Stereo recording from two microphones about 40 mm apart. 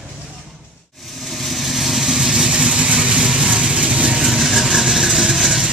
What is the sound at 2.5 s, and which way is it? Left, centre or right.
Vehicle, centre.